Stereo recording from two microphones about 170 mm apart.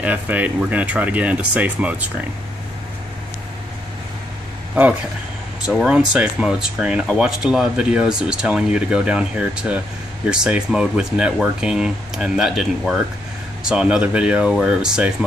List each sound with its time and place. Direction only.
0.0 s speech: 10° right (ahead or behind)
5.7 s speech: 5° right (ahead or behind)